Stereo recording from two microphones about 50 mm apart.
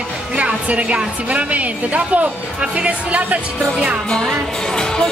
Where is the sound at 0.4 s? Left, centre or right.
Right.